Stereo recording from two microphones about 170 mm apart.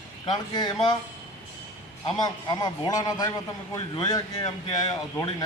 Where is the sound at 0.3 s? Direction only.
25° left (ahead or behind).